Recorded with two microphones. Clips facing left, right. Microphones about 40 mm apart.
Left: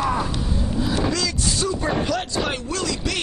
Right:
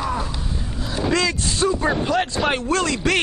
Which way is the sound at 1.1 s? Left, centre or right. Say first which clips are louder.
Right 3 dB; right.